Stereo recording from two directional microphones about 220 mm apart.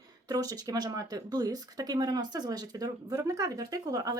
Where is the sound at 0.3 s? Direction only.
15° right (ahead or behind).